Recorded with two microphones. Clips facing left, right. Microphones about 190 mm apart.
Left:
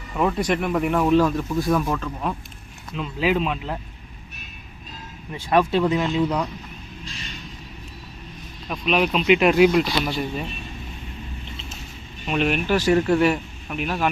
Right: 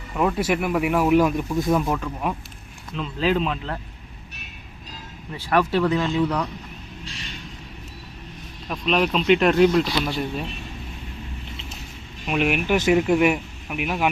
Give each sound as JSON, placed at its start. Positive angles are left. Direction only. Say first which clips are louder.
{"t": 0.2, "sound": "speech", "louder": "even", "side_deg": 0}
{"t": 2.9, "sound": "speech", "louder": "even", "side_deg": 5}
{"t": 5.3, "sound": "speech", "louder": "left 1 dB", "side_deg": 20}
{"t": 8.7, "sound": "speech", "louder": "even", "side_deg": 0}
{"t": 12.2, "sound": "speech", "louder": "even", "side_deg": -10}